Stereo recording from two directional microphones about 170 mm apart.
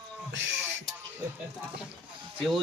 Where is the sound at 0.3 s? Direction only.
90° right.